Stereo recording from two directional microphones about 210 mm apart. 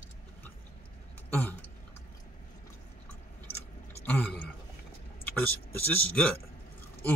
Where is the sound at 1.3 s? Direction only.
10° left (ahead or behind).